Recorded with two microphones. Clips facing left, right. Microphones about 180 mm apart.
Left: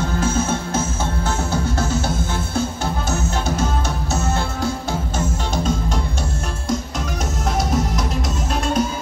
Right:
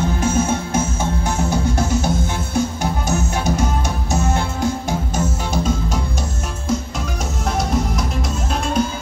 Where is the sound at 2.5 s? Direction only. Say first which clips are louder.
Right 4 dB; 15° right (ahead or behind).